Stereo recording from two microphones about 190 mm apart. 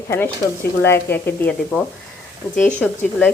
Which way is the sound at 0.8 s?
10° left (ahead or behind).